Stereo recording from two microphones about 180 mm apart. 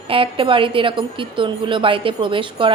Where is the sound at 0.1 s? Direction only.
30° right (ahead or behind).